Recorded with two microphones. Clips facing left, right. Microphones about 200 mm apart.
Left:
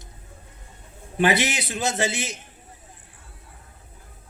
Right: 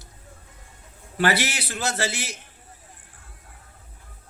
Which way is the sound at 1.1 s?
20° left (ahead or behind).